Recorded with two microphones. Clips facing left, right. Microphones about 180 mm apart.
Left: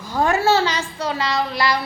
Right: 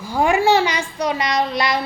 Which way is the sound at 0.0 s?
10° right (ahead or behind).